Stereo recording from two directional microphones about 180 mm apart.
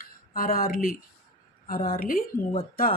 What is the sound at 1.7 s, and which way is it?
Speech, 55° left (ahead or behind).